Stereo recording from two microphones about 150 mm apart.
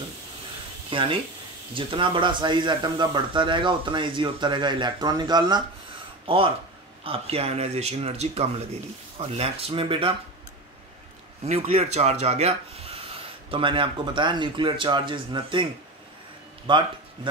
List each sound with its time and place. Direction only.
0.8 s speech: 35° right (ahead or behind)
11.4 s speech: 45° right (ahead or behind)
16.6 s a man's voice: 35° right (ahead or behind)